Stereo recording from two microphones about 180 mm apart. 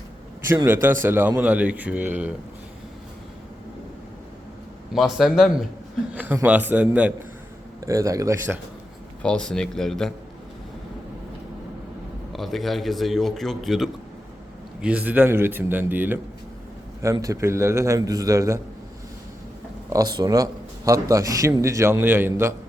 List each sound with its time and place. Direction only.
0.4 s a man's voice: 15° right (ahead or behind)
4.9 s a man's voice: centre (ahead or behind); by 8.5 s 15° right (ahead or behind)
9.2 s a man's voice: 5° left (ahead or behind)
12.3 s a man's voice: centre (ahead or behind); by 18.6 s 15° right (ahead or behind)
19.9 s a man's voice: 20° right (ahead or behind)